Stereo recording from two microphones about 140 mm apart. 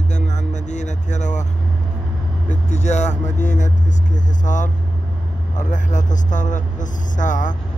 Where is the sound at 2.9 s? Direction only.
55° left (ahead or behind).